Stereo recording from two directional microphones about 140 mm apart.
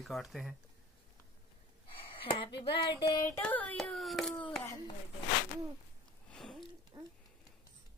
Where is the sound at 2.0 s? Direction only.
40° left (ahead or behind).